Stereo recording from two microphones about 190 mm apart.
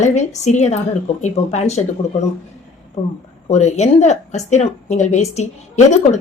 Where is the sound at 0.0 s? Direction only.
40° left (ahead or behind).